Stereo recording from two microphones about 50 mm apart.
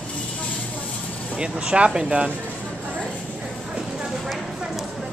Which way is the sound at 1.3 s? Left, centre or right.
Centre.